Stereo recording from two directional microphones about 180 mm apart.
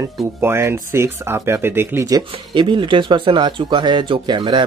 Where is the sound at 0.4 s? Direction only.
15° right (ahead or behind).